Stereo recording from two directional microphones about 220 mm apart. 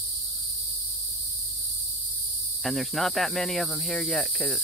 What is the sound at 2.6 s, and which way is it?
Cricket, centre (ahead or behind).